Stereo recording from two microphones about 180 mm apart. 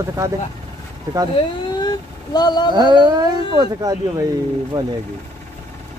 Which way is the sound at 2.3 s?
25° left (ahead or behind).